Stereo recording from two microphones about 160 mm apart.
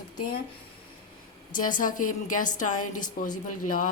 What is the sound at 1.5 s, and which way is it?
Speech, 55° left (ahead or behind).